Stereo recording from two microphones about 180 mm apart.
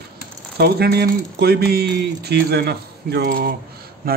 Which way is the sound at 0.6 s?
60° right (ahead or behind).